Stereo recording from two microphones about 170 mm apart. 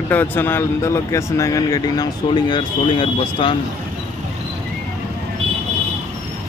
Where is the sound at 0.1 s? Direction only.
10° left (ahead or behind); by 3.5 s 30° left (ahead or behind).